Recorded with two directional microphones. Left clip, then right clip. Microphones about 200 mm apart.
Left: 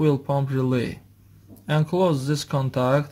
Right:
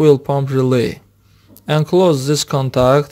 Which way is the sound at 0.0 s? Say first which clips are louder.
Right 10 dB; 45° right (ahead or behind).